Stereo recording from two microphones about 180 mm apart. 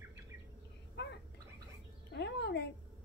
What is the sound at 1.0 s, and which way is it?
Gargling, 75° left (ahead or behind).